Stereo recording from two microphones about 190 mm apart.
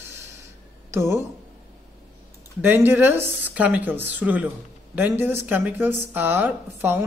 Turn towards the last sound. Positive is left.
turn(degrees=-10)  # may be behind; listen again after turning